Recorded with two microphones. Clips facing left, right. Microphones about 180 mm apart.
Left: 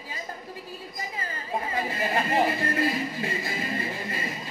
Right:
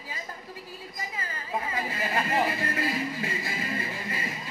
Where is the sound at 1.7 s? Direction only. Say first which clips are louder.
Left 4 dB; 25° left (ahead or behind).